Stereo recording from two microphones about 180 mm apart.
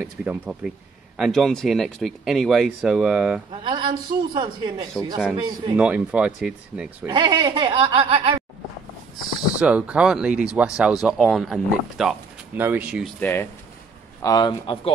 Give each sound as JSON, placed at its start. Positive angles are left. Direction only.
{"t": 0.0, "sound": "speech", "side_deg": -5}
{"t": 3.6, "sound": "speech", "side_deg": -25}
{"t": 5.8, "sound": "speech", "side_deg": -5}
{"t": 7.1, "sound": "speech", "side_deg": -25}
{"t": 9.6, "sound": "speech", "side_deg": -5}
{"t": 13.0, "sound": "speech", "side_deg": 10}
{"t": 14.2, "sound": "a man's voice", "side_deg": 20}